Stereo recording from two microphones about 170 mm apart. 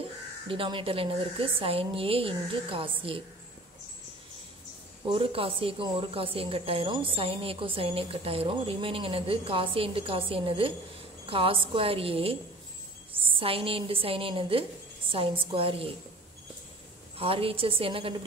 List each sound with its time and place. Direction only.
0.5 s a woman's voice: 30° right (ahead or behind)
5.0 s a woman's voice: 35° right (ahead or behind)
17.2 s a woman's voice: 35° right (ahead or behind)